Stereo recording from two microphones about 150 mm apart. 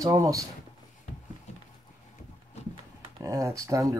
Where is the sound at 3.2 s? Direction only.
20° right (ahead or behind).